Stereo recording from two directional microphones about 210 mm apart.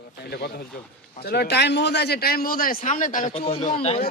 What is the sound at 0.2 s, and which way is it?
A man's voice, 50° left (ahead or behind).